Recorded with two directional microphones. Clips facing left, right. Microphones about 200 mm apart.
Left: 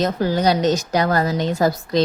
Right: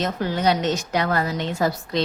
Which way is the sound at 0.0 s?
35° left (ahead or behind).